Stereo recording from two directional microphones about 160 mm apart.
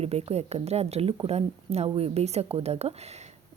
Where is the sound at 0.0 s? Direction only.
40° right (ahead or behind).